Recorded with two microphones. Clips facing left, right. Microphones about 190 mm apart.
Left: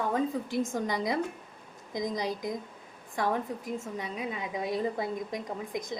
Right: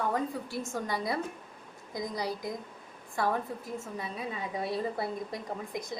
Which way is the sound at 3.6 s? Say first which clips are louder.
Left 2 dB; 15° left (ahead or behind).